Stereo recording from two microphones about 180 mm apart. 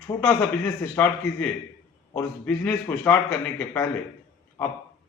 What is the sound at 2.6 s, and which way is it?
A man's voice, 10° left (ahead or behind).